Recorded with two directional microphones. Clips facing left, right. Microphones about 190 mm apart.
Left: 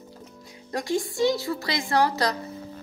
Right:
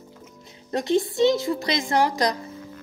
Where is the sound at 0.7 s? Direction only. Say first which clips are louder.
Right 5 dB; 20° right (ahead or behind).